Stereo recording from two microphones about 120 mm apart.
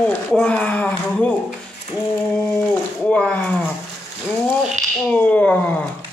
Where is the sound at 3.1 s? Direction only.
10° left (ahead or behind).